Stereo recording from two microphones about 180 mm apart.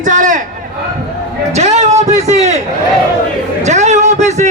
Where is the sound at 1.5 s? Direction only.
40° right (ahead or behind).